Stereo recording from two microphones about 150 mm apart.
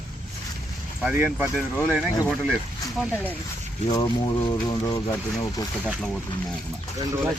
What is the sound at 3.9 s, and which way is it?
Speech, 25° left (ahead or behind).